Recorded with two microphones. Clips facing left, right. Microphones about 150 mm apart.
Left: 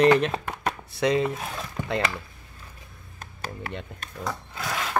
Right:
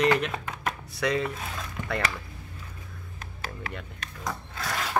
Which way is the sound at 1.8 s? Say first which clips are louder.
Left 3 dB; 20° left (ahead or behind).